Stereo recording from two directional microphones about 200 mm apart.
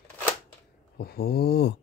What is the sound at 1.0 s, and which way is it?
Speech, 50° left (ahead or behind).